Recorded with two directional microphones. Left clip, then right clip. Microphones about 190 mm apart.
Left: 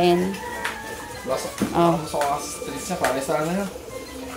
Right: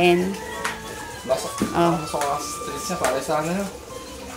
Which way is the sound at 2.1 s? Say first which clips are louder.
Left 1 dB; 10° right (ahead or behind).